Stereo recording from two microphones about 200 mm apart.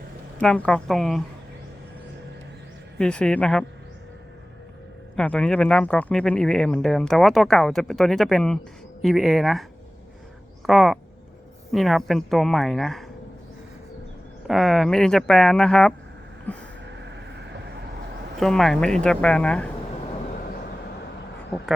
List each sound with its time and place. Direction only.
0.3 s speech: 5° left (ahead or behind)
3.0 s speech: 5° left (ahead or behind)
5.1 s speech: 5° left (ahead or behind)
10.7 s speech: centre (ahead or behind)
14.4 s speech: centre (ahead or behind)
16.5 s a sound: 10° left (ahead or behind)
18.3 s speech: centre (ahead or behind)